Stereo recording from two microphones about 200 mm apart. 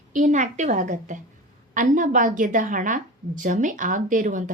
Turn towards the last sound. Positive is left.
turn(degrees=-40)  # may be behind; listen again after turning